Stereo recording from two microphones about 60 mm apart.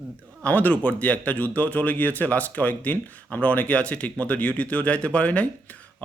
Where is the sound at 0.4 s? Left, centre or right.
Left.